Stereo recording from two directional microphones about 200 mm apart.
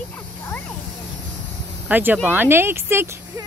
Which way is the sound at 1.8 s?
10° right (ahead or behind).